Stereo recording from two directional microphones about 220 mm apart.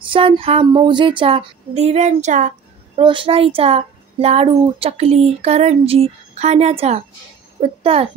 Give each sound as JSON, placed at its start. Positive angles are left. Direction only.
{"t": 0.0, "sound": "a child's voice", "side_deg": -25}
{"t": 3.0, "sound": "a child's voice", "side_deg": -25}